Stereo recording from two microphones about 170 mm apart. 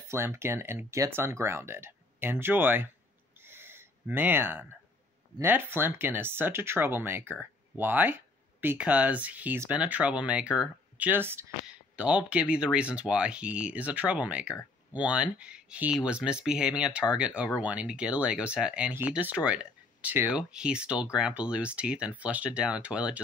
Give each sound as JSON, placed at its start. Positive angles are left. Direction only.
{"t": 0.1, "sound": "speech", "side_deg": -15}
{"t": 3.4, "sound": "a sound", "side_deg": -15}
{"t": 5.4, "sound": "speech", "side_deg": -10}